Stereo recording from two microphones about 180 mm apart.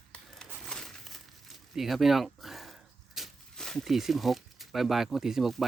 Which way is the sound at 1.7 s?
Centre (ahead or behind).